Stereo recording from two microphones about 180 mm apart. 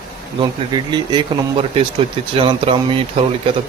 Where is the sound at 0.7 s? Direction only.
25° right (ahead or behind).